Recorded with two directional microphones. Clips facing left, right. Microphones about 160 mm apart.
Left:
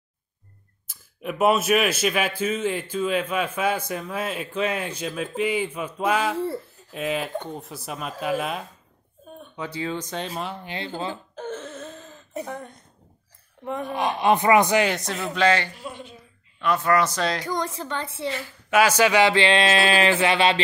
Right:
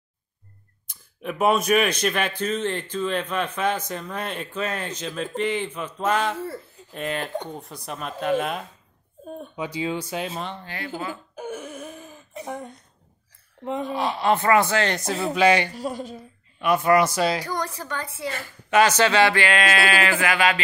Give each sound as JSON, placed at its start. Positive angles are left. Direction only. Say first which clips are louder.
{"t": 0.8, "sound": "speech", "louder": "even", "side_deg": 5}
{"t": 6.3, "sound": "speech", "louder": "left 5 dB", "side_deg": 25}
{"t": 6.9, "sound": "speech", "louder": "left 1 dB", "side_deg": 5}
{"t": 9.6, "sound": "speech", "louder": "right 1 dB", "side_deg": -15}
{"t": 10.6, "sound": "speech", "louder": "left 2 dB", "side_deg": 20}
{"t": 11.3, "sound": "wail", "louder": "even", "side_deg": -10}
{"t": 12.4, "sound": "a sound", "louder": "right 2 dB", "side_deg": -15}
{"t": 13.8, "sound": "speech", "louder": "left 2 dB", "side_deg": 15}
{"t": 14.9, "sound": "speech", "louder": "right 1 dB", "side_deg": 0}
{"t": 15.3, "sound": "speech", "louder": "right 2 dB", "side_deg": -15}
{"t": 15.7, "sound": "speech", "louder": "right 7 dB", "side_deg": -40}
{"t": 16.5, "sound": "speech", "louder": "right 2 dB", "side_deg": -15}
{"t": 17.4, "sound": "speech", "louder": "left 1 dB", "side_deg": 20}
{"t": 18.7, "sound": "speech", "louder": "even", "side_deg": 10}